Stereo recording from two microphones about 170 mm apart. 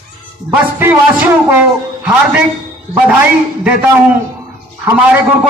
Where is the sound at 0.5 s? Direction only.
10° right (ahead or behind).